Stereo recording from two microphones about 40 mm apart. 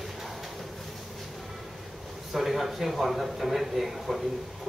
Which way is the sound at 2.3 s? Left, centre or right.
Centre.